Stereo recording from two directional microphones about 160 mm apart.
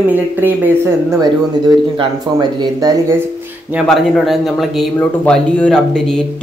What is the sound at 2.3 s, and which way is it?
Speech, 20° right (ahead or behind).